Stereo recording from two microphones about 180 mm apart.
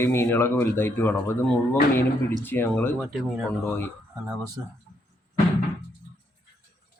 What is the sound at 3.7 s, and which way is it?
Speech, 10° left (ahead or behind).